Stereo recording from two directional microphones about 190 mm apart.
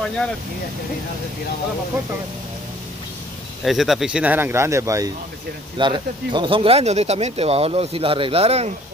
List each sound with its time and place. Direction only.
3.6 s speech: centre (ahead or behind); by 8.7 s 35° right (ahead or behind)